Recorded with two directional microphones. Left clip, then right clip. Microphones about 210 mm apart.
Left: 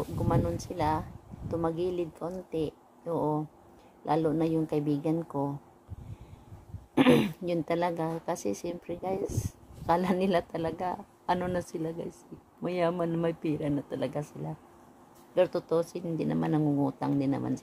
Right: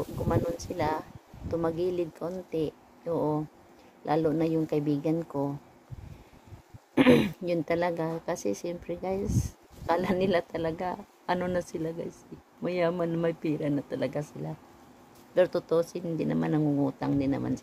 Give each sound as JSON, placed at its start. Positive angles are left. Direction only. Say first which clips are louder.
{"t": 0.3, "sound": "speech", "louder": "right 1 dB", "side_deg": 5}
{"t": 7.0, "sound": "speech", "louder": "right 2 dB", "side_deg": 5}